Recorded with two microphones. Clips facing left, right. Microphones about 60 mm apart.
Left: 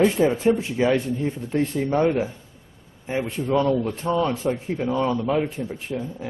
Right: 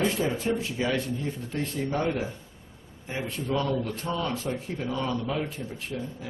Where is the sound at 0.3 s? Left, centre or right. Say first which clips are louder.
Left 7 dB; left.